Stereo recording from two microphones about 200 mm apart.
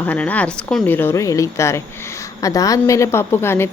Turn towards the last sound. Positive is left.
turn(degrees=10)  # may be behind; listen again after turning